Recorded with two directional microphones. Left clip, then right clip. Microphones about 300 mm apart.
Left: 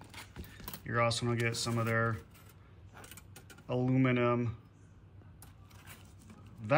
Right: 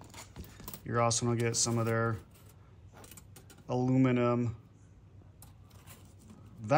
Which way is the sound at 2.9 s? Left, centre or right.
Centre.